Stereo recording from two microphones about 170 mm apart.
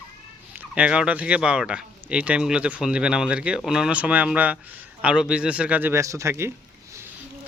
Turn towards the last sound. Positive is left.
turn(degrees=-15)  # may be behind; listen again after turning